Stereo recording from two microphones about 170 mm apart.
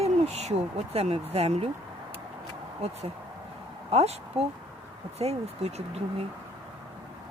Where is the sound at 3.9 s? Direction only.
40° right (ahead or behind).